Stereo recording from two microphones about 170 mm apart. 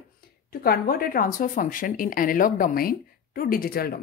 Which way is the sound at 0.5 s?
60° left (ahead or behind).